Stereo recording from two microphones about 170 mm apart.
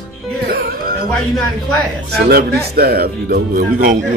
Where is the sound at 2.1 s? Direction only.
70° right (ahead or behind).